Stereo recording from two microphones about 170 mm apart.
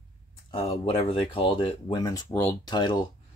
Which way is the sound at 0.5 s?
30° left (ahead or behind).